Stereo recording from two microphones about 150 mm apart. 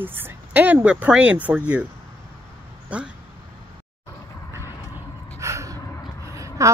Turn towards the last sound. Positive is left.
turn(degrees=-20)  # may be behind; listen again after turning